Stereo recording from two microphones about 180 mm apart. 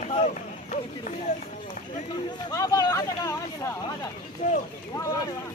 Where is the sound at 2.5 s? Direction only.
20° left (ahead or behind).